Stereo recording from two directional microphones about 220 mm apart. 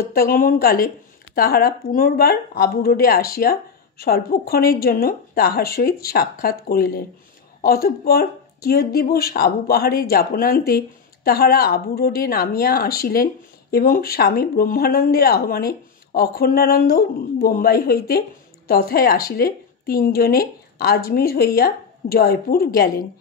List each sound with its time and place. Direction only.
0.0 s a woman's voice: 40° left (ahead or behind)